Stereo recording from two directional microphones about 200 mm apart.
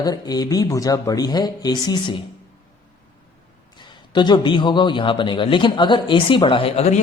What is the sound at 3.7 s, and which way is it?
A man's voice, 20° left (ahead or behind).